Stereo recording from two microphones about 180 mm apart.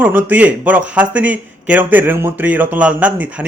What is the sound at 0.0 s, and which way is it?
A man's voice, 10° right (ahead or behind).